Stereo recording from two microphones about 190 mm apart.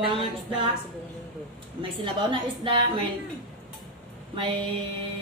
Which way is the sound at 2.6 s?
30° right (ahead or behind).